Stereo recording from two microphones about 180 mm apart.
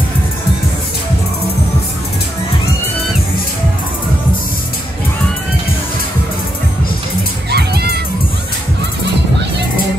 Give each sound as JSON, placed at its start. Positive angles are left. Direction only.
{"t": 7.5, "sound": "music", "side_deg": -65}